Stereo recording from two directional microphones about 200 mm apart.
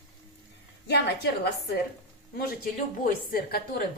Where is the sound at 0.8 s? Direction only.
55° left (ahead or behind).